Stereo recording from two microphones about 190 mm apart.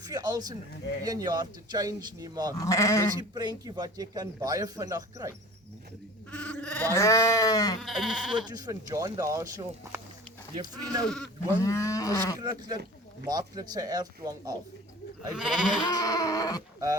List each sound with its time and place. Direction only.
0.1 s speech: 20° right (ahead or behind)
2.6 s wild animals: 15° left (ahead or behind)
3.2 s speech: 20° right (ahead or behind)
6.3 s bleat: 5° left (ahead or behind)
7.8 s speech: centre (ahead or behind)
8.4 s speech: 20° right (ahead or behind)
11.0 s speech: centre (ahead or behind)
11.4 s wild animals: 15° left (ahead or behind)
12.4 s speech: 20° right (ahead or behind)
15.3 s speech: 5° right (ahead or behind)
15.9 s a sound: 20° left (ahead or behind)